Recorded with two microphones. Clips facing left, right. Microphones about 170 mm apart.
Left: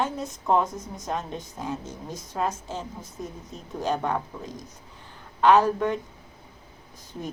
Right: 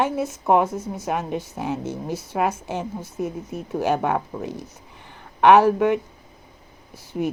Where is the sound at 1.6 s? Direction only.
75° right (ahead or behind).